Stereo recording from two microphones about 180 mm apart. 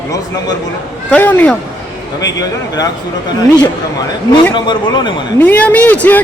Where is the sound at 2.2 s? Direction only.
20° left (ahead or behind).